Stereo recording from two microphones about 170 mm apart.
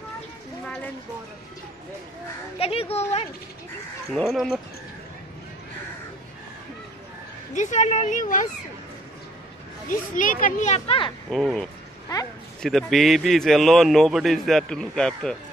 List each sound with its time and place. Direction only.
2.6 s a woman's voice: 35° left (ahead or behind)
4.1 s a man's voice: centre (ahead or behind)
7.5 s a child's voice: 45° left (ahead or behind)
9.8 s a child's voice: 50° left (ahead or behind)
11.2 s a man's voice: centre (ahead or behind)